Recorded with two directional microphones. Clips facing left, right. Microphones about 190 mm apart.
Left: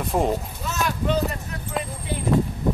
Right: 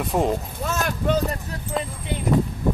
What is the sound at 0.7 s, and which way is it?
Clip-clop, 50° right (ahead or behind).